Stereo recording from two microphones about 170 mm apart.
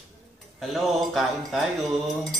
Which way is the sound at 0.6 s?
Centre (ahead or behind).